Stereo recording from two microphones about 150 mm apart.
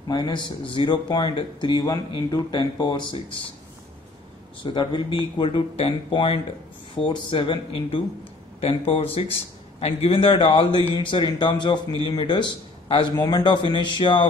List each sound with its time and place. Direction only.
0.1 s a man's voice: 30° left (ahead or behind)
4.7 s a man's voice: 35° left (ahead or behind)